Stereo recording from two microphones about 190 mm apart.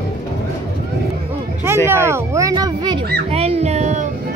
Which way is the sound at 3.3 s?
30° right (ahead or behind).